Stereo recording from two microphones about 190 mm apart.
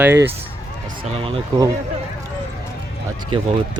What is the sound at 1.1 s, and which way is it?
Speech, 30° right (ahead or behind).